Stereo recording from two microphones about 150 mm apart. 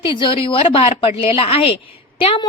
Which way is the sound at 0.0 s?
35° left (ahead or behind).